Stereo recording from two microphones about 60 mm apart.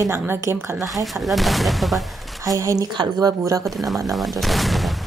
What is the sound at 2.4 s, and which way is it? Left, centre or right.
A woman's voice, right.